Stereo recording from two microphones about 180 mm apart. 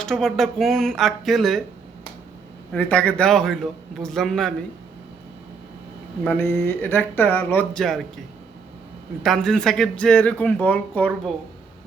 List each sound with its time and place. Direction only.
0.0 s speech: centre (ahead or behind)
2.7 s speech: 10° left (ahead or behind)
6.2 s speech: 10° left (ahead or behind)
9.2 s speech: centre (ahead or behind)